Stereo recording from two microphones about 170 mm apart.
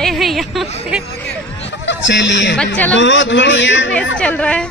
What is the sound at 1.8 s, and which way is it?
A man's voice, 90° left.